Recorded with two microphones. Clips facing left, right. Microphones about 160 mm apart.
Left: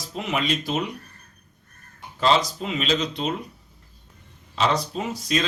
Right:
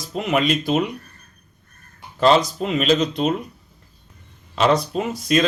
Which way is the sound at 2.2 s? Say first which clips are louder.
Right 5 dB; 50° right (ahead or behind).